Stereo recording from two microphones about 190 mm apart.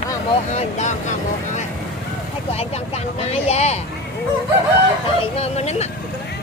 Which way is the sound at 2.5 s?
35° left (ahead or behind).